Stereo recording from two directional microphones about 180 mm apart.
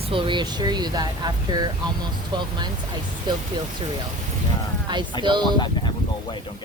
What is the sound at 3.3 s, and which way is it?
Speech, 25° right (ahead or behind).